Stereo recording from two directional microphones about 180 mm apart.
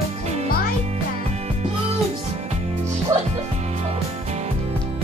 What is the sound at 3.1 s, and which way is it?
Music, 15° right (ahead or behind).